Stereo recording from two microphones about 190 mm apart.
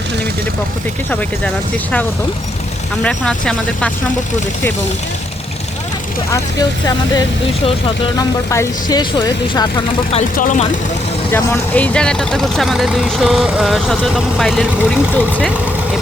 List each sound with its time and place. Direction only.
3.0 s speech: 5° left (ahead or behind)
6.3 s speech: 20° left (ahead or behind)
10.3 s speech: 40° left (ahead or behind)
11.3 s speech: 10° left (ahead or behind)